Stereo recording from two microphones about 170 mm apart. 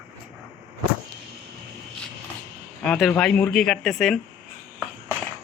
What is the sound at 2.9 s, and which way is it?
Speech, 5° left (ahead or behind).